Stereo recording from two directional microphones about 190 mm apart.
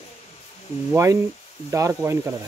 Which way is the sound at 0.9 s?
15° right (ahead or behind).